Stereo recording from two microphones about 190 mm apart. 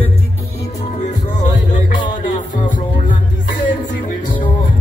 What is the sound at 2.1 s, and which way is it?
Music, 40° left (ahead or behind).